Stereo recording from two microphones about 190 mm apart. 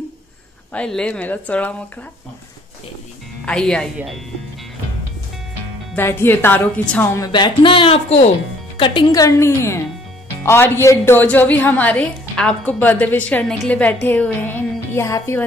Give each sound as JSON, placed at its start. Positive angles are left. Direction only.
{"t": 0.7, "sound": "a woman's voice", "side_deg": 5}
{"t": 3.4, "sound": "speech", "side_deg": 5}
{"t": 5.9, "sound": "a woman's voice", "side_deg": 10}